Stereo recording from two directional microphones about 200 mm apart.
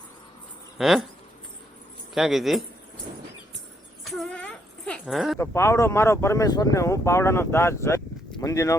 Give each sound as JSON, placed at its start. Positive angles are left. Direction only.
{"t": 0.8, "sound": "speech", "side_deg": 0}
{"t": 2.1, "sound": "speech", "side_deg": 0}
{"t": 4.0, "sound": "a sound", "side_deg": 5}
{"t": 5.4, "sound": "speech", "side_deg": 15}